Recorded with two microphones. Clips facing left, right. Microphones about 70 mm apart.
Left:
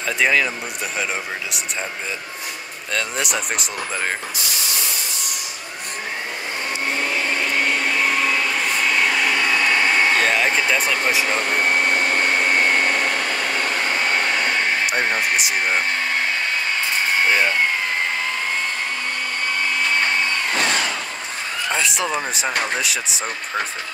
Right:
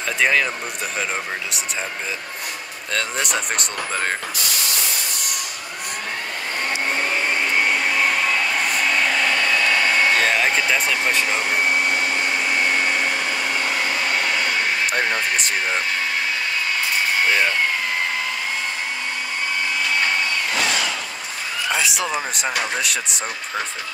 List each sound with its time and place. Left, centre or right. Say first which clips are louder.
0.2 s speech: even; centre
2.9 s speech: even; centre
8.0 s vacuum cleaner: even; centre
10.1 s speech: even; centre
11.7 s vacuum cleaner: left 2 dB; left
21.7 s speech: left 1 dB; centre